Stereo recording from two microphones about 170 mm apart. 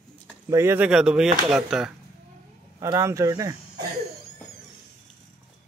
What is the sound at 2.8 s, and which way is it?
Speech, 15° right (ahead or behind).